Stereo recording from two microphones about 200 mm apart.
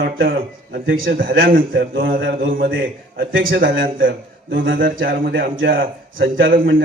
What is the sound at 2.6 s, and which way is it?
A man's voice, 70° right (ahead or behind).